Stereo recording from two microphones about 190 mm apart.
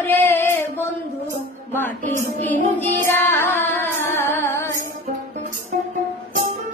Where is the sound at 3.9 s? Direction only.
10° left (ahead or behind).